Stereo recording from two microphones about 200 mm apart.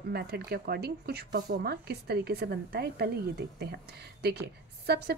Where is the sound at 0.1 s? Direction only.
50° right (ahead or behind).